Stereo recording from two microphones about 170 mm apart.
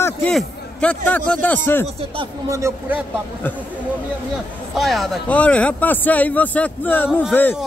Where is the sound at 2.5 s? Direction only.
15° right (ahead or behind).